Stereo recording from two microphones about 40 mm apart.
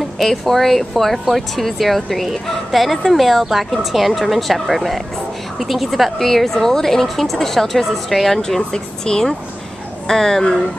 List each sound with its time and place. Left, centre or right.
0.2 s speech: centre
8.4 s speech: centre